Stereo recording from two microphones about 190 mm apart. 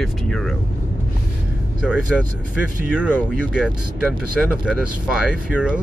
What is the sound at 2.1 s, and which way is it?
Speech, centre (ahead or behind).